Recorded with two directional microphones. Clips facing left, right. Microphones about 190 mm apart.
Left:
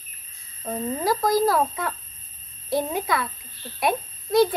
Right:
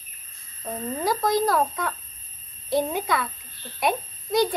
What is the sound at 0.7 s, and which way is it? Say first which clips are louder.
A child's voice: left 2 dB; centre (ahead or behind).